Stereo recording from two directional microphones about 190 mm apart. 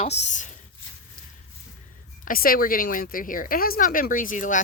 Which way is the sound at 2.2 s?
50° left (ahead or behind).